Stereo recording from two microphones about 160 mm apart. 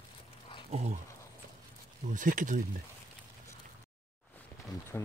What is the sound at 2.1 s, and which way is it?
Speech, 55° right (ahead or behind).